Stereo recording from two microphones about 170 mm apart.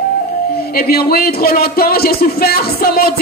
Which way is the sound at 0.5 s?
65° left (ahead or behind).